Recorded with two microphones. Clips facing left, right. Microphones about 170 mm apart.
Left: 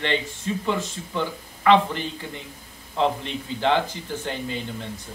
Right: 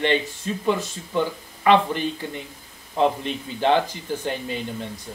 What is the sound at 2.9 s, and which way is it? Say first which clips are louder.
Speech: right 2 dB; 15° right (ahead or behind).